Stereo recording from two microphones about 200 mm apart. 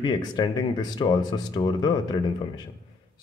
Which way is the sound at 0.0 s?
20° left (ahead or behind).